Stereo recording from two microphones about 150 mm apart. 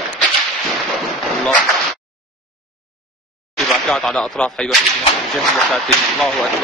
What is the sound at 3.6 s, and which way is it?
Speech, 5° left (ahead or behind).